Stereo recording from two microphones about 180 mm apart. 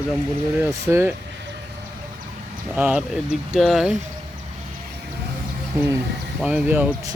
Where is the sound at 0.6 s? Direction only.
15° right (ahead or behind).